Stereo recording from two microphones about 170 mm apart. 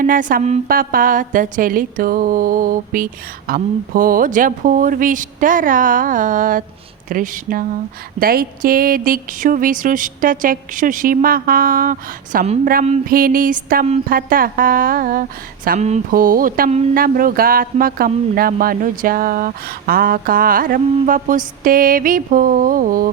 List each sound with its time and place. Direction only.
0.0 s a sound: 55° right (ahead or behind)
7.1 s speech: 55° right (ahead or behind)
16.9 s speech: 55° right (ahead or behind)